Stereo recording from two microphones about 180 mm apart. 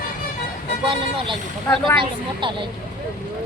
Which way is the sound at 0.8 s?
30° right (ahead or behind).